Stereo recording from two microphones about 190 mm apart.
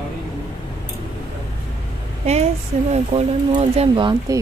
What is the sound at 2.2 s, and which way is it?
A woman's voice, 35° right (ahead or behind).